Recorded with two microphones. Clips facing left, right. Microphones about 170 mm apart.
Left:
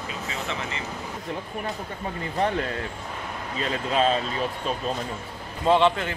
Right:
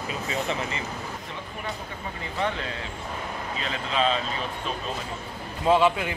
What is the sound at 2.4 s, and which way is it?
Speech, 45° left (ahead or behind).